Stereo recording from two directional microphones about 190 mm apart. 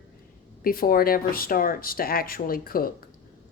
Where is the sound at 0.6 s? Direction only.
50° left (ahead or behind).